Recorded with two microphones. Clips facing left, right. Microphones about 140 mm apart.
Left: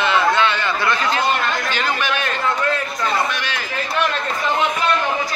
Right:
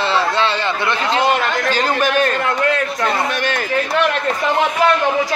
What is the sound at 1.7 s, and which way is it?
Speech, 40° right (ahead or behind).